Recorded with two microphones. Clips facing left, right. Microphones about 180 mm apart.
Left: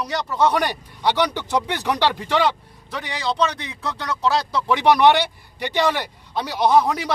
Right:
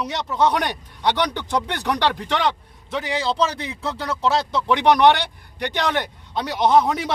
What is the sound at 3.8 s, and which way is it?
Speech, 30° right (ahead or behind).